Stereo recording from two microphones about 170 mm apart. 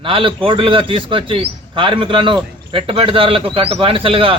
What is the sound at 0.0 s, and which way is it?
A man's voice, 30° right (ahead or behind).